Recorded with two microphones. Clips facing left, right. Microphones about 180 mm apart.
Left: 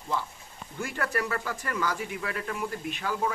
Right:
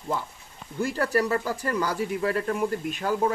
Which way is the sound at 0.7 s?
35° right (ahead or behind).